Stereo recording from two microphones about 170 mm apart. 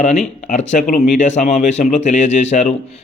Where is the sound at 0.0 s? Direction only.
40° left (ahead or behind).